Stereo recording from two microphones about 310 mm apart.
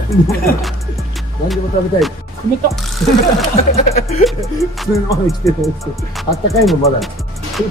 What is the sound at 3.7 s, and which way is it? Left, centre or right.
Music, centre.